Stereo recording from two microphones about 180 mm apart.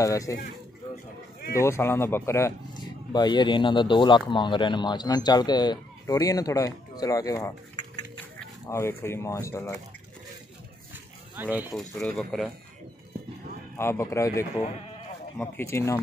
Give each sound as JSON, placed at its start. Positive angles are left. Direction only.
{"t": 0.0, "sound": "speech", "side_deg": 20}
{"t": 1.5, "sound": "speech", "side_deg": 15}
{"t": 8.6, "sound": "speech", "side_deg": 15}
{"t": 11.3, "sound": "speech", "side_deg": -10}
{"t": 12.0, "sound": "speech", "side_deg": 5}
{"t": 13.7, "sound": "speech", "side_deg": 15}